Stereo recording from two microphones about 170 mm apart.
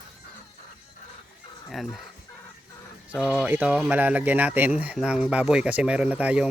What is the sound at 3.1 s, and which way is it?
Speech, 5° right (ahead or behind).